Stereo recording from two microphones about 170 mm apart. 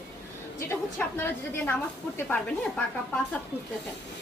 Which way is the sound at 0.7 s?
10° left (ahead or behind).